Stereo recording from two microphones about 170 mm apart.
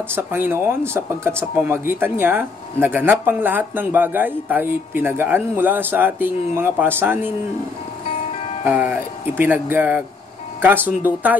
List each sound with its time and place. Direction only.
0.1 s speech: 15° right (ahead or behind)
8.6 s speech: 10° right (ahead or behind)